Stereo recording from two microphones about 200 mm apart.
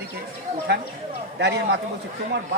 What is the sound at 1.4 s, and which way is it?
Speech, 60° right (ahead or behind).